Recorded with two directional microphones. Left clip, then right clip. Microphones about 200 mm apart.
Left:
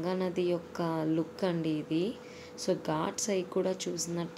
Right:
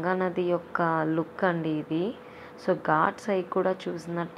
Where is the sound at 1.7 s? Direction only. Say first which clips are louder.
Right 3 dB; 30° right (ahead or behind).